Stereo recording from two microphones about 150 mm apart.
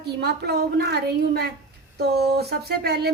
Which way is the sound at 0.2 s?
90° right.